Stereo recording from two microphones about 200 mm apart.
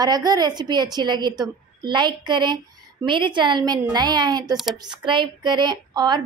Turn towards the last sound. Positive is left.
turn(degrees=-20)  # may be behind; listen again after turning